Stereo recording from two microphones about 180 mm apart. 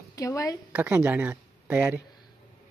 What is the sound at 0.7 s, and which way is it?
Speech, 10° right (ahead or behind).